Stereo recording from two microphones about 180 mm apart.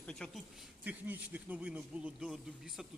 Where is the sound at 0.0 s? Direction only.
5° left (ahead or behind).